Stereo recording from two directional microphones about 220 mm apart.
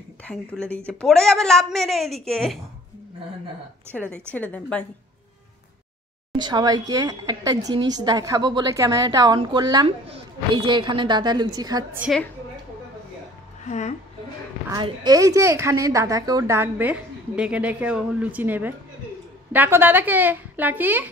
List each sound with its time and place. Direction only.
0.2 s a woman's voice: 5° left (ahead or behind)
3.9 s a woman's voice: 5° left (ahead or behind)
6.3 s a woman's voice: 20° right (ahead or behind)
12.0 s a woman's voice: centre (ahead or behind)
13.7 s a woman's voice: 30° left (ahead or behind)
14.7 s a woman's voice: 15° right (ahead or behind)